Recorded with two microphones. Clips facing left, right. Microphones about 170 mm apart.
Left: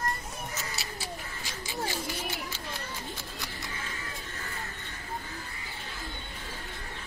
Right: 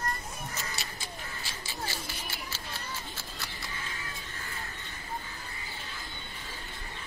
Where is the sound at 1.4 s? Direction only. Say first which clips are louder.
Left 6 dB; 15° left (ahead or behind).